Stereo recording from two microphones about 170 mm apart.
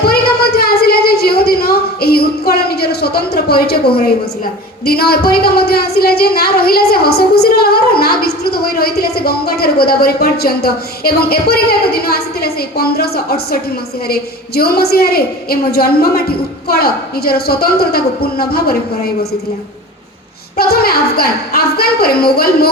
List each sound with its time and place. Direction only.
0.0 s a sound: 70° left (ahead or behind)
4.9 s a woman's voice: 65° left (ahead or behind)
20.6 s a woman's voice: 65° left (ahead or behind)